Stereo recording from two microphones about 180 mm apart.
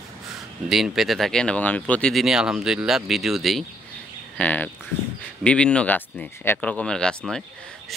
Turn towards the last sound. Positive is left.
turn(degrees=5)  # may be behind; listen again after turning